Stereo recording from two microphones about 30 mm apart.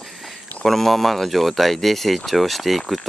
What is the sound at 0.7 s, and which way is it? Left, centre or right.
Speech, centre.